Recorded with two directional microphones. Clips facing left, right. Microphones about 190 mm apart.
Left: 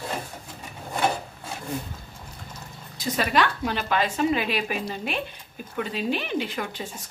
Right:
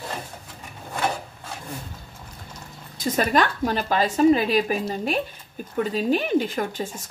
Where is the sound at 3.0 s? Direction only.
45° right (ahead or behind).